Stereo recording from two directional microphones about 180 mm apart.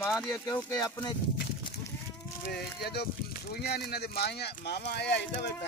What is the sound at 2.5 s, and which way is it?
Speech, 60° left (ahead or behind).